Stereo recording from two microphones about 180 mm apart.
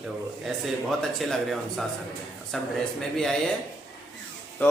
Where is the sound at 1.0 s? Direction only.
Centre (ahead or behind).